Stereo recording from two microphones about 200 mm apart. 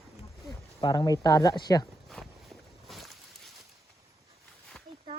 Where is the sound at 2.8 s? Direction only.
Centre (ahead or behind).